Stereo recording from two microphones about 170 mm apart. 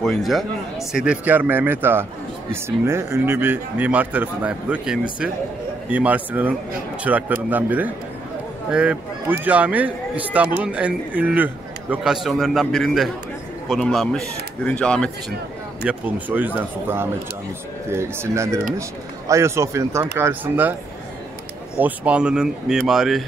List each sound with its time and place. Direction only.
0.0 s a man's voice: centre (ahead or behind)
15.8 s a man's voice: 10° right (ahead or behind)
21.7 s a man's voice: 10° right (ahead or behind)